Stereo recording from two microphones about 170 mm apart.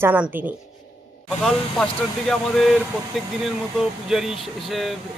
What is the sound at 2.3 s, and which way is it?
Speech, centre (ahead or behind).